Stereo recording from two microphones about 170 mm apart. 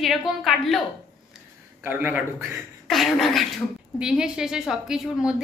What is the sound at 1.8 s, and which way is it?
Speech, 10° right (ahead or behind).